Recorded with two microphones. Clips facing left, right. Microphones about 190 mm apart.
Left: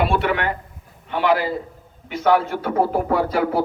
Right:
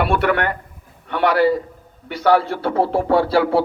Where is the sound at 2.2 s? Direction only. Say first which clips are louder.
Right 2 dB; 35° right (ahead or behind).